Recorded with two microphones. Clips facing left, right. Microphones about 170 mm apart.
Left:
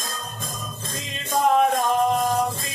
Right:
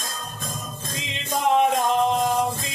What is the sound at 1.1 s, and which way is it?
Music, 20° right (ahead or behind).